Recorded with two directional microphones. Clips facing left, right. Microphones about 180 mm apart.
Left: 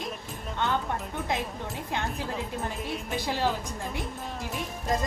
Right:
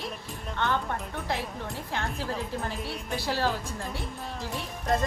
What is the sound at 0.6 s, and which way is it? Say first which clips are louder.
Speech: even; 15° left (ahead or behind).